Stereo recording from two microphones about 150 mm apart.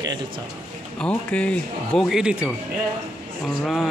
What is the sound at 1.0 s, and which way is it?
Speech, 10° left (ahead or behind).